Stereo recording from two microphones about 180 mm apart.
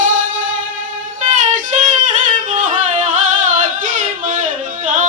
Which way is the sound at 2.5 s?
40° right (ahead or behind).